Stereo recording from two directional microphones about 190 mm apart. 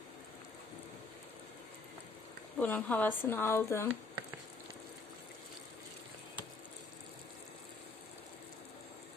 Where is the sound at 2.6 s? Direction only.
5° left (ahead or behind).